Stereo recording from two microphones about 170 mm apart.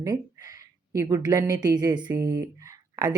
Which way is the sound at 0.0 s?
20° right (ahead or behind).